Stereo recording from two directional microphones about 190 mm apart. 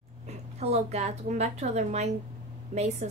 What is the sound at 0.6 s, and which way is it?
A woman's voice, 35° right (ahead or behind).